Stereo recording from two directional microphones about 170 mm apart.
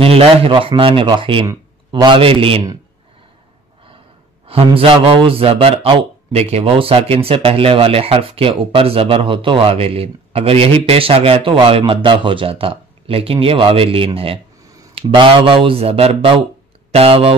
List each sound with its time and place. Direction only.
0.0 s a man's voice: 35° right (ahead or behind)
4.5 s a man's voice: 35° right (ahead or behind)